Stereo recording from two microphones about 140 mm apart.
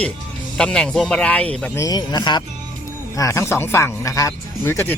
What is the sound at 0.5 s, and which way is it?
Speech, 5° left (ahead or behind).